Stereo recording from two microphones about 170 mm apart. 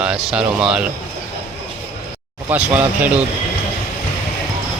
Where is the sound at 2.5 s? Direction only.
10° right (ahead or behind).